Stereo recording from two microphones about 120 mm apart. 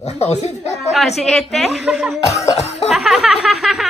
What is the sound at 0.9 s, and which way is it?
A woman's voice, centre (ahead or behind).